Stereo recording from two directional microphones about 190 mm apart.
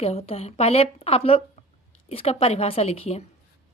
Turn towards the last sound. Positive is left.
turn(degrees=30)  # may be behind; listen again after turning